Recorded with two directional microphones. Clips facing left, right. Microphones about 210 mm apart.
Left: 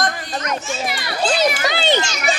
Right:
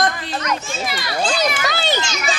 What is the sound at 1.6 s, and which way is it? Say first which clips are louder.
Children playing: left 3 dB; 20° left (ahead or behind).